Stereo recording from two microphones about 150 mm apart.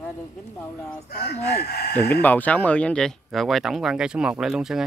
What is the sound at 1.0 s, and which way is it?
Speech, 90° left.